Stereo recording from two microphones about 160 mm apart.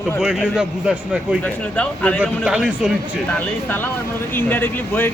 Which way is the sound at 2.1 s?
5° right (ahead or behind).